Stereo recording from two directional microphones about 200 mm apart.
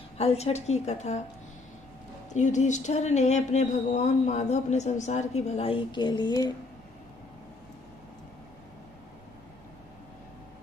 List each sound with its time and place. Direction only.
0.2 s speech: 30° left (ahead or behind)
2.3 s speech: 35° left (ahead or behind); by 6.5 s 20° left (ahead or behind)